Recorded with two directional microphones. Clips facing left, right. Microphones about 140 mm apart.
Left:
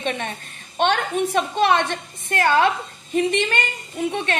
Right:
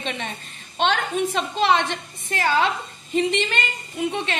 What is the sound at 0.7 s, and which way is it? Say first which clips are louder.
A woman's voice: left 2 dB; 50° left (ahead or behind).